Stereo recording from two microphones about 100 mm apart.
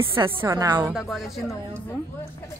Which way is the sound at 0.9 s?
5° right (ahead or behind).